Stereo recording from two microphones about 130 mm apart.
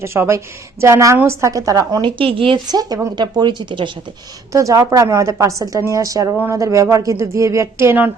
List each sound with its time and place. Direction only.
0.0 s a woman's voice: 20° right (ahead or behind); by 3.9 s 35° right (ahead or behind)
4.5 s a woman's voice: 25° right (ahead or behind)